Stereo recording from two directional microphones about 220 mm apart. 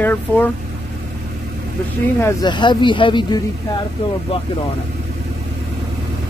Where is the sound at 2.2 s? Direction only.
20° left (ahead or behind).